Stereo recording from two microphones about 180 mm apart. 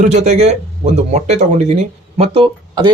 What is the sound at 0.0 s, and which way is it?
Speech, 40° right (ahead or behind).